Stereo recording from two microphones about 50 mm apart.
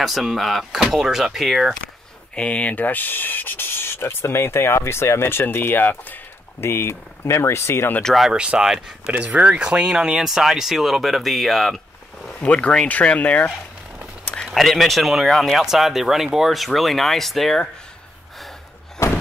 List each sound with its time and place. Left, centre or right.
0.0 s speech: centre
2.3 s speech: left
6.6 s speech: left
8.3 s speech: centre
12.4 s speech: left
14.5 s speech: centre